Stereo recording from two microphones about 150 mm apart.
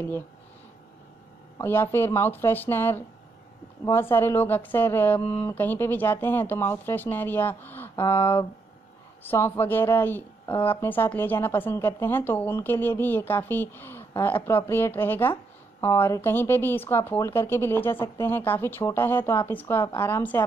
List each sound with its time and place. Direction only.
1.6 s a woman's voice: 15° left (ahead or behind)